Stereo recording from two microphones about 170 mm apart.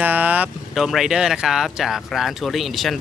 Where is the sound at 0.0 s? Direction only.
10° right (ahead or behind).